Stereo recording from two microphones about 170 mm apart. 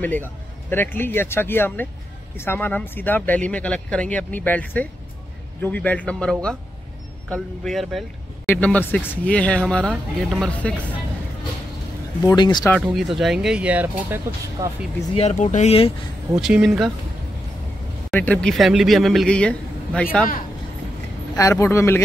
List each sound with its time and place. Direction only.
0.0 s speech: 10° left (ahead or behind)
7.6 s a man's voice: centre (ahead or behind)
12.2 s speech: 20° left (ahead or behind)
12.8 s a man's voice: centre (ahead or behind)
15.1 s speech: 45° left (ahead or behind)
16.3 s a man's voice: centre (ahead or behind)
18.1 s a man's voice: 5° left (ahead or behind)
21.4 s speech: 15° left (ahead or behind)